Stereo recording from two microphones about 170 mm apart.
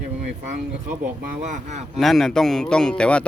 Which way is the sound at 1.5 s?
45° right (ahead or behind).